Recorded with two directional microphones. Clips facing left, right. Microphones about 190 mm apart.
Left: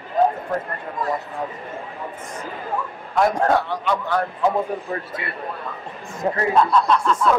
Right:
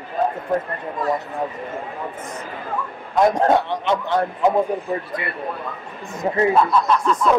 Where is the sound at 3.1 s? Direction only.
20° right (ahead or behind).